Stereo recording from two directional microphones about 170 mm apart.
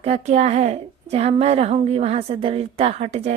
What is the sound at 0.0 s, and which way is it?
A woman's voice, 40° right (ahead or behind).